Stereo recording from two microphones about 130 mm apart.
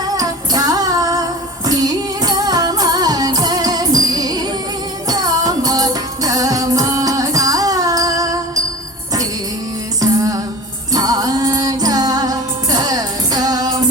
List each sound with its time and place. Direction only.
0.0 s music: 30° right (ahead or behind)
10.9 s music: 30° right (ahead or behind)